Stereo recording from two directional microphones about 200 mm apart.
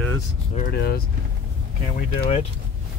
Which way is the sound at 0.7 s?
50° left (ahead or behind).